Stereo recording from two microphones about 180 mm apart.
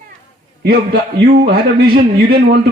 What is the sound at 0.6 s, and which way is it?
Speech, 55° right (ahead or behind).